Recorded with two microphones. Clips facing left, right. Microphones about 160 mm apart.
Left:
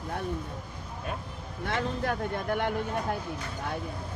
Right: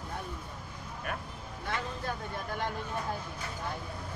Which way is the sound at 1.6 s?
65° left (ahead or behind).